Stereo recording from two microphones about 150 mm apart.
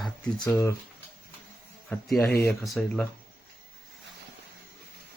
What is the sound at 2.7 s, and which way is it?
Speech, 5° left (ahead or behind).